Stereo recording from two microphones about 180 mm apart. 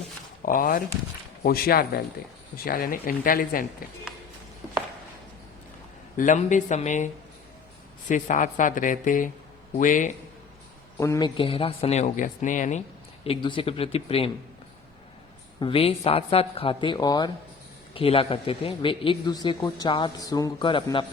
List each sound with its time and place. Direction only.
0.4 s speech: 50° left (ahead or behind)
6.1 s speech: 45° left (ahead or behind)
10.9 s a man's voice: 15° left (ahead or behind)
11.3 s speech: 30° left (ahead or behind)
13.2 s speech: 30° left (ahead or behind)
15.6 s speech: 30° left (ahead or behind)